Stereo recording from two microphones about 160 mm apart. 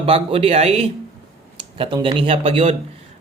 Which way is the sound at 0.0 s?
35° right (ahead or behind).